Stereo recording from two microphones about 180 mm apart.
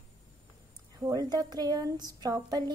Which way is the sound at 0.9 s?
20° right (ahead or behind).